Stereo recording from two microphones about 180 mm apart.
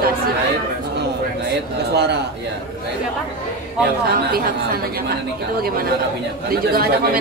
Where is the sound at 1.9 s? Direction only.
70° right (ahead or behind).